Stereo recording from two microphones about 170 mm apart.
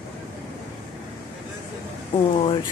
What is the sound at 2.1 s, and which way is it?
Speech, 30° left (ahead or behind).